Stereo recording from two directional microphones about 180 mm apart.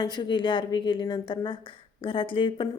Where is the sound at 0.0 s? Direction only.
25° left (ahead or behind).